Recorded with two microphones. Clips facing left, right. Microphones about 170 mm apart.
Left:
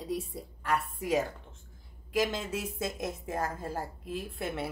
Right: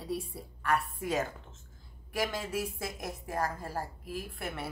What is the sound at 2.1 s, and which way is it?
A woman's voice, 20° left (ahead or behind).